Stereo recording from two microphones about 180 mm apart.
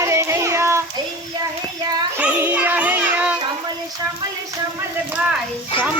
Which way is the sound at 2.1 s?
10° right (ahead or behind).